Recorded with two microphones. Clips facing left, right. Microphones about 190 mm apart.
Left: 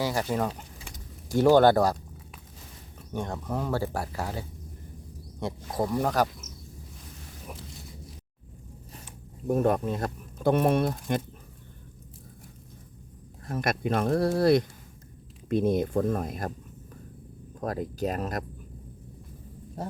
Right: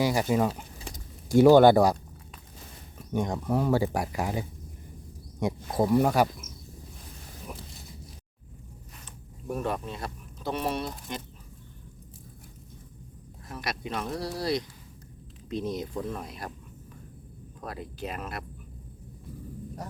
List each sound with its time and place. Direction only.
0.0 s speech: 10° right (ahead or behind)
3.1 s speech: 15° right (ahead or behind)
7.5 s a sound: centre (ahead or behind)
9.5 s speech: 45° left (ahead or behind)
13.5 s speech: 50° left (ahead or behind)
17.6 s speech: 45° left (ahead or behind)
19.8 s a sound: 30° left (ahead or behind)